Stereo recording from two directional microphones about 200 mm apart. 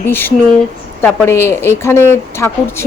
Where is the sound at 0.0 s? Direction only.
10° left (ahead or behind).